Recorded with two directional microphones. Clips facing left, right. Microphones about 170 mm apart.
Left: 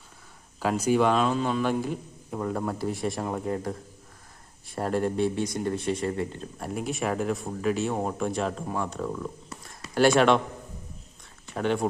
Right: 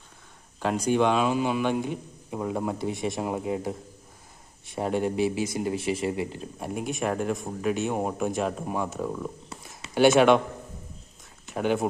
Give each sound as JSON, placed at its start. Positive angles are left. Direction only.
{"t": 0.6, "sound": "speech", "side_deg": 5}
{"t": 3.2, "sound": "speech", "side_deg": -10}
{"t": 8.6, "sound": "speech", "side_deg": -15}
{"t": 11.4, "sound": "speech", "side_deg": -5}